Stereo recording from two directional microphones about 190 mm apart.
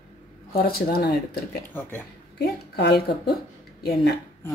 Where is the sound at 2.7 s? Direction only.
60° left (ahead or behind).